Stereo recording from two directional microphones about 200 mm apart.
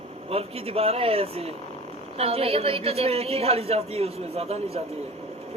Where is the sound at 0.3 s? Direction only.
30° right (ahead or behind).